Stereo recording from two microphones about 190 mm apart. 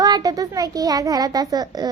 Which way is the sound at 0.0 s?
20° right (ahead or behind).